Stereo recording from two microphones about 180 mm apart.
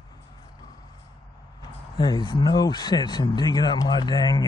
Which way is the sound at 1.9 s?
25° left (ahead or behind).